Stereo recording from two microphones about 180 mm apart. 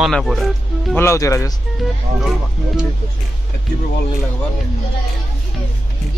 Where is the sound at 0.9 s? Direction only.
15° left (ahead or behind).